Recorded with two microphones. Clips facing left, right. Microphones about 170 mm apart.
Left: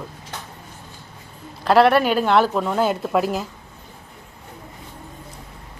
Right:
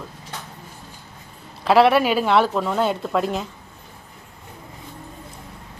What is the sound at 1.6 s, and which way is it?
Speech, centre (ahead or behind).